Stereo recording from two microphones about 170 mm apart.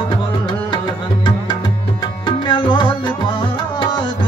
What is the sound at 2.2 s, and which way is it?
Tabla, 25° left (ahead or behind).